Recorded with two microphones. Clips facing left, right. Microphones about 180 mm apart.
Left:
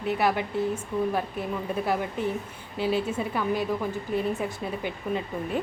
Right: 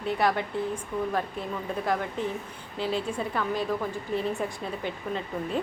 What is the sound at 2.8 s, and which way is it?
Speech, 10° left (ahead or behind).